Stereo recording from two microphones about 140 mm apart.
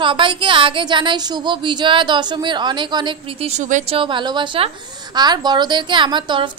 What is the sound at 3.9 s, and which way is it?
A woman's voice, 35° right (ahead or behind).